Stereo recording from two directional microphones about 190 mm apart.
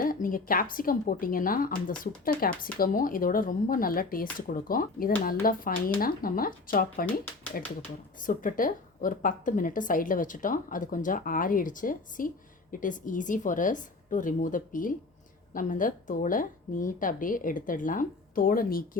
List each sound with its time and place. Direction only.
0.0 s speech: 45° left (ahead or behind)